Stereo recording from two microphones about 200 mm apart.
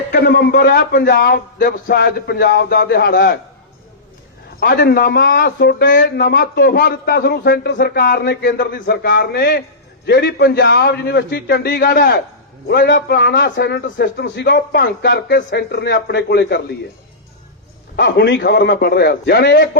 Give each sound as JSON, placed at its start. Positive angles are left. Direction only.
{"t": 0.1, "sound": "a man's voice", "side_deg": 55}
{"t": 4.6, "sound": "a man's voice", "side_deg": 50}
{"t": 17.9, "sound": "a man's voice", "side_deg": 60}